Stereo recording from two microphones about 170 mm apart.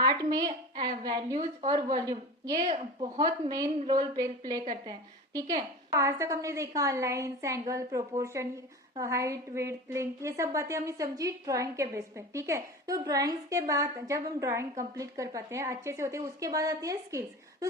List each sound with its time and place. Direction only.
0.0 s a woman's voice: 25° right (ahead or behind)
2.6 s a woman's voice: 35° right (ahead or behind)
3.2 s a woman's voice: 25° right (ahead or behind)